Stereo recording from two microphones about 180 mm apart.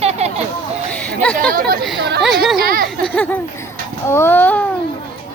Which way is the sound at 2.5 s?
50° right (ahead or behind).